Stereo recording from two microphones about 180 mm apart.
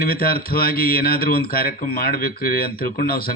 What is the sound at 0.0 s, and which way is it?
Speech, 55° left (ahead or behind).